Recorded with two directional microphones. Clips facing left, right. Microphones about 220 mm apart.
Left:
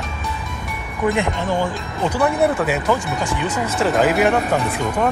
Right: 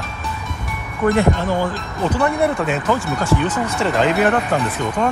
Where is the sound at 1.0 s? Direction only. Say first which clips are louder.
Right 3 dB; 15° left (ahead or behind).